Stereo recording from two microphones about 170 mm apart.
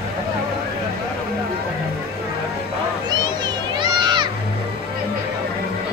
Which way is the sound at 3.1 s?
25° right (ahead or behind).